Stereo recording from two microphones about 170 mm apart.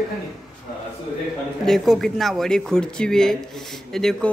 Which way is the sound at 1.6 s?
Centre (ahead or behind).